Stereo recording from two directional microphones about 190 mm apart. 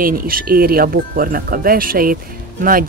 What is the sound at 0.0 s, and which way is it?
Speech, 50° right (ahead or behind).